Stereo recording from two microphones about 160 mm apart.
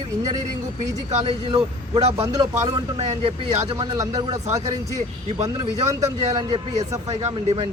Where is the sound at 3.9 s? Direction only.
25° right (ahead or behind).